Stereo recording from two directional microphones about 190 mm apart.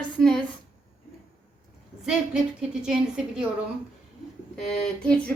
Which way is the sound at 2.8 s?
5° right (ahead or behind).